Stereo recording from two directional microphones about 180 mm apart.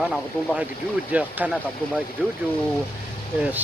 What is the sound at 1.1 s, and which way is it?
Speech, 10° right (ahead or behind).